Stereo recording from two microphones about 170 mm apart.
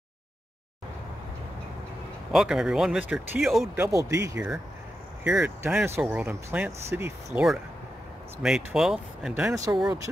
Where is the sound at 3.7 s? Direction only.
15° right (ahead or behind).